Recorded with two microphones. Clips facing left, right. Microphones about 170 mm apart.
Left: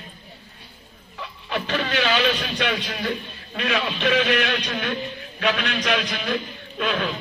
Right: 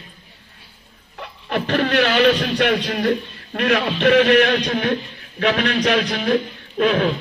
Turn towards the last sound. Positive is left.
turn(degrees=-50)  # may be behind; listen again after turning